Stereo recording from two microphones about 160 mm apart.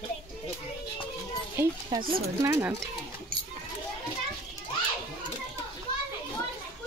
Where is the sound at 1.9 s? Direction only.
20° right (ahead or behind).